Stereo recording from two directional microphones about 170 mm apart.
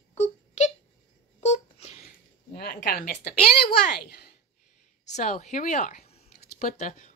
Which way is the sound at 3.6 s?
65° left (ahead or behind).